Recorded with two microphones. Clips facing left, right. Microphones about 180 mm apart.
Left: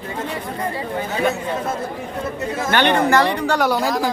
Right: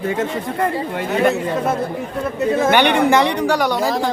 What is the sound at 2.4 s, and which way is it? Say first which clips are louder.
Speech: right 10 dB; 60° right (ahead or behind).